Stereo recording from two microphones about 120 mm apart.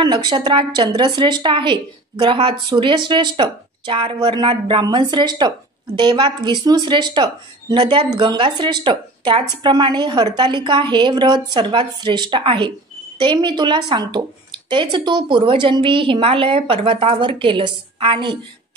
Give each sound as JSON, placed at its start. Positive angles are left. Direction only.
{"t": 0.0, "sound": "a woman's voice", "side_deg": -40}